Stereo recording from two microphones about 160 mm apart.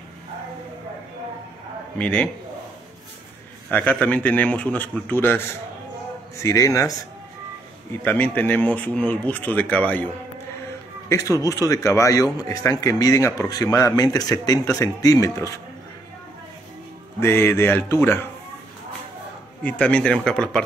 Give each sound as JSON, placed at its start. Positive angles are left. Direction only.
{"t": 2.0, "sound": "speech", "side_deg": 10}
{"t": 3.7, "sound": "speech", "side_deg": 10}
{"t": 6.4, "sound": "speech", "side_deg": 20}
{"t": 11.1, "sound": "speech", "side_deg": 20}
{"t": 17.2, "sound": "speech", "side_deg": 15}
{"t": 19.6, "sound": "speech", "side_deg": 5}